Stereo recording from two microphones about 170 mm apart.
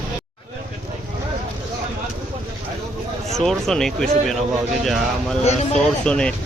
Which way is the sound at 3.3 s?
Centre (ahead or behind).